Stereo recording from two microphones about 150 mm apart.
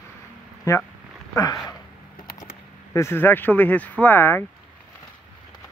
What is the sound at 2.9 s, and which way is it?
Speech, 15° left (ahead or behind).